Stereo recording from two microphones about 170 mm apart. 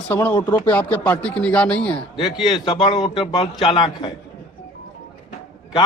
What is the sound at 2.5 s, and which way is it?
A man's voice, 25° left (ahead or behind).